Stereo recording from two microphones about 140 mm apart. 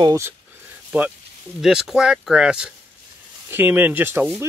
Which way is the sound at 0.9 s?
10° right (ahead or behind).